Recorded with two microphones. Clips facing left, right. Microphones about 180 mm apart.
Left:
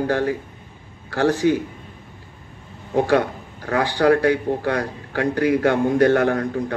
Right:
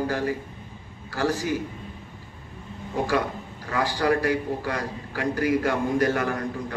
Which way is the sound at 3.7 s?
65° left (ahead or behind).